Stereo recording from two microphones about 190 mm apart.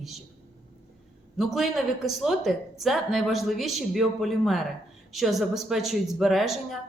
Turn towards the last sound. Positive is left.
turn(degrees=0)  # may be behind; listen again after turning